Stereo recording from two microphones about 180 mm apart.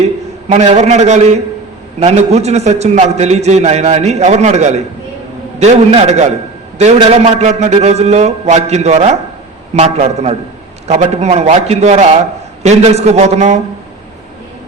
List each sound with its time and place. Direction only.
0.4 s a man's voice: 40° right (ahead or behind)